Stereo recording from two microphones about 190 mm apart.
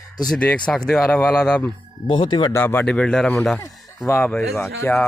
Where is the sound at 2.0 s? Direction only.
25° left (ahead or behind).